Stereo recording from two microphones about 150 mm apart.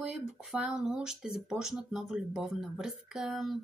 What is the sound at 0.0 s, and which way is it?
Speech, 5° right (ahead or behind).